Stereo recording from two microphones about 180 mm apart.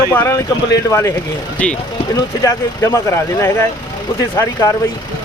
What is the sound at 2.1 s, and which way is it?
Speech, 20° left (ahead or behind).